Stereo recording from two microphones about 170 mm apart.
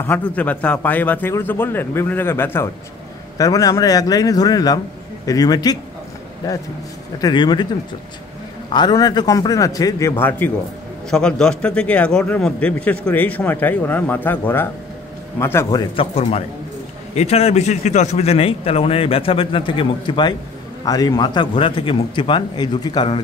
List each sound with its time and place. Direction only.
0.0 s a man's voice: 10° left (ahead or behind)
7.2 s speech: 25° left (ahead or behind)
8.7 s a man's voice: 25° left (ahead or behind)
16.0 s a man's voice: 35° left (ahead or behind)